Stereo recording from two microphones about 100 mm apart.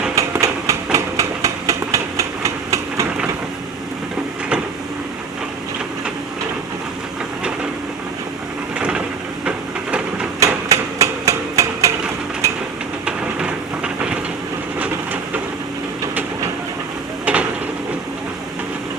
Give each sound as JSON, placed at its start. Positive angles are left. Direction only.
{"t": 0.2, "sound": "train", "side_deg": -30}
{"t": 0.9, "sound": "a sound", "side_deg": -30}
{"t": 8.8, "sound": "train", "side_deg": -10}
{"t": 10.4, "sound": "hammer", "side_deg": -35}
{"t": 13.1, "sound": "train", "side_deg": -10}
{"t": 17.3, "sound": "a sound", "side_deg": -15}